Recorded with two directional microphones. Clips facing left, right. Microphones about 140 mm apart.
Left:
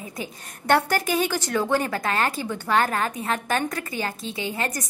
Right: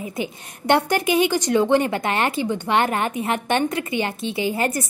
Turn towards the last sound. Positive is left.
turn(degrees=-25)  # may be behind; listen again after turning